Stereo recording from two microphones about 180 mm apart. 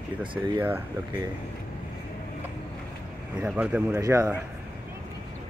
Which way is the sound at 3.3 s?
5° right (ahead or behind).